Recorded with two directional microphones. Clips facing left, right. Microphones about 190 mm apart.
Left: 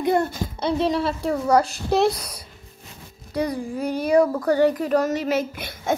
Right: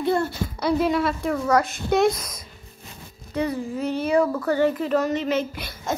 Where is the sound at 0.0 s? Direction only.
20° left (ahead or behind).